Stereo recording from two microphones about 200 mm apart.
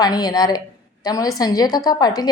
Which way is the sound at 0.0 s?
20° left (ahead or behind).